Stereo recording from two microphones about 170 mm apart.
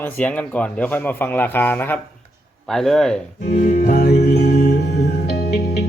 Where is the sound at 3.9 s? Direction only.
70° left (ahead or behind).